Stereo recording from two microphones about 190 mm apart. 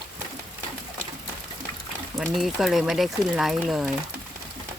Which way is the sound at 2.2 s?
Centre (ahead or behind).